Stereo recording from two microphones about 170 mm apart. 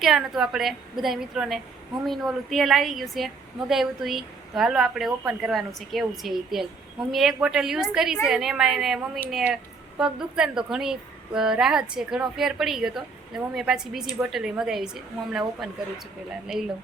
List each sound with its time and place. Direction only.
0.0 s a woman's voice: centre (ahead or behind)